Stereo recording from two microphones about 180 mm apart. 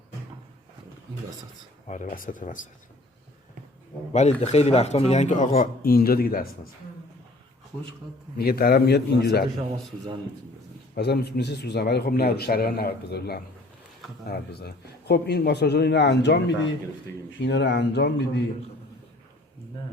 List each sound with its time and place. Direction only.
1.9 s speech: 45° left (ahead or behind)
4.1 s a man's voice: 40° left (ahead or behind)
5.8 s a man's voice: 55° left (ahead or behind)
8.4 s a man's voice: 60° left (ahead or behind)
10.9 s a man's voice: 65° left (ahead or behind)